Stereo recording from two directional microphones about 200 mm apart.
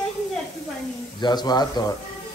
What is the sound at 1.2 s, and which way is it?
Speech, 20° left (ahead or behind).